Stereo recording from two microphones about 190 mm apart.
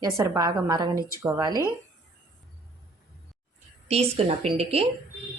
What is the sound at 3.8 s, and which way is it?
A woman's voice, 35° right (ahead or behind).